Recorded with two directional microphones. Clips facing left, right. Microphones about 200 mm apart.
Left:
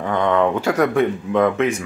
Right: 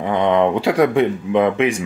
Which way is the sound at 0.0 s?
15° right (ahead or behind).